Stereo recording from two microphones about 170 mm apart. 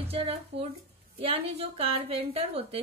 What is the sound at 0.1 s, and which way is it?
A woman's voice, 35° right (ahead or behind).